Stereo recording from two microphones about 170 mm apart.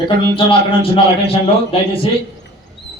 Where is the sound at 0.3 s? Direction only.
30° left (ahead or behind).